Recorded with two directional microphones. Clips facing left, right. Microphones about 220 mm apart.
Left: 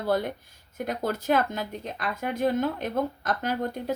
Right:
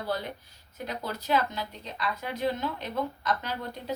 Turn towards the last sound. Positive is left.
turn(degrees=50)  # may be behind; listen again after turning